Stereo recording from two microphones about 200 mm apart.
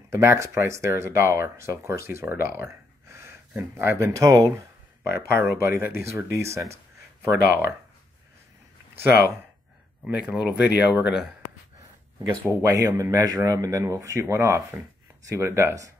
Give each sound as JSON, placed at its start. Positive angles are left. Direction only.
{"t": 0.1, "sound": "speech", "side_deg": -15}
{"t": 8.9, "sound": "speech", "side_deg": -10}